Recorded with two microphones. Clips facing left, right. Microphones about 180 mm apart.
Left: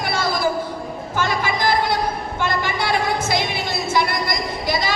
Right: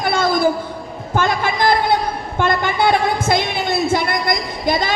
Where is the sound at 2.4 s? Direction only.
55° right (ahead or behind).